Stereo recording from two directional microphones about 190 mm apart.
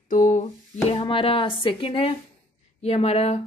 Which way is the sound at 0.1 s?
40° left (ahead or behind).